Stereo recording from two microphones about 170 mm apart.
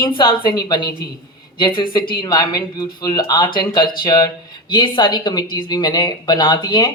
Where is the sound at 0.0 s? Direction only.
30° left (ahead or behind).